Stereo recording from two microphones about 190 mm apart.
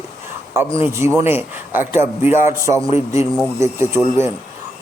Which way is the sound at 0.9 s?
15° right (ahead or behind).